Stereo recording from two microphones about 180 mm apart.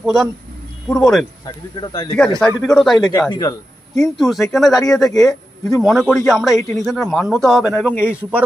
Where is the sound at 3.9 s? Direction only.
Centre (ahead or behind).